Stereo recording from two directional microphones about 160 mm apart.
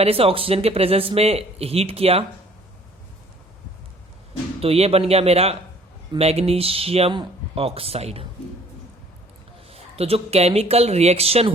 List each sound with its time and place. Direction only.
0.0 s speech: 35° right (ahead or behind)
4.6 s speech: 40° right (ahead or behind)
9.6 s speech: 40° right (ahead or behind)